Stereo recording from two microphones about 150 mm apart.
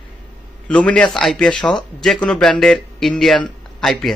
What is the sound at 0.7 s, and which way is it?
A man's voice, 10° left (ahead or behind).